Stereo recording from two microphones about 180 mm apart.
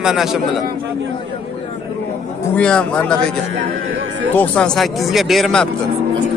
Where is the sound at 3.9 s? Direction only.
90° right.